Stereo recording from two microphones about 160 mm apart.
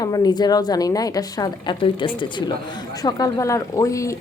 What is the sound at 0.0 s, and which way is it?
A woman's voice, 25° left (ahead or behind).